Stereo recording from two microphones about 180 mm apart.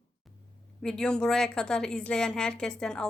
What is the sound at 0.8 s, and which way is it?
Speech, 5° left (ahead or behind).